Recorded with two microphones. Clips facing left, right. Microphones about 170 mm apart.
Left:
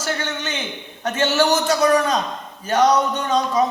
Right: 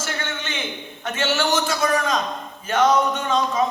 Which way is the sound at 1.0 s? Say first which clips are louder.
Left 5 dB; 40° left (ahead or behind).